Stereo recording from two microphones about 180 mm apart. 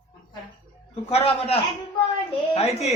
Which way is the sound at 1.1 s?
35° left (ahead or behind).